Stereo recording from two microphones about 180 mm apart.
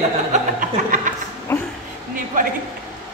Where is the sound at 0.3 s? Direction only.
50° right (ahead or behind).